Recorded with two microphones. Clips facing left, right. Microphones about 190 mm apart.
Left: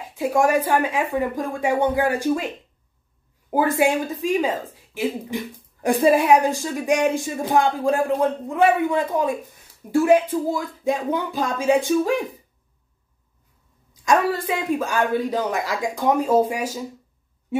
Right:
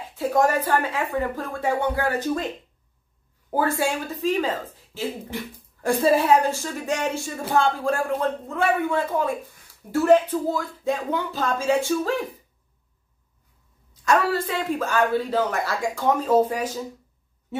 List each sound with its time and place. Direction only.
0.1 s a woman's voice: 10° left (ahead or behind)
14.0 s a woman's voice: 15° left (ahead or behind)